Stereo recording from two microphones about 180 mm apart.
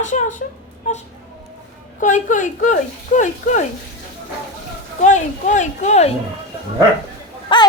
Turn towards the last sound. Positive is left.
turn(degrees=25)  # may be behind; listen again after turning